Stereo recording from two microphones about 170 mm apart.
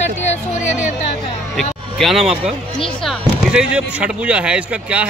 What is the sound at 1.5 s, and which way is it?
A man's voice, centre (ahead or behind).